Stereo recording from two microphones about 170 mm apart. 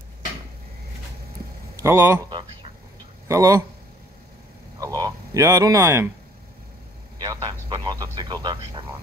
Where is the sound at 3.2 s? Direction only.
20° right (ahead or behind).